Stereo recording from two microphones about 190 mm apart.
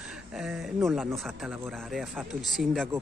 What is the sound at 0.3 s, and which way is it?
Speech, 5° right (ahead or behind).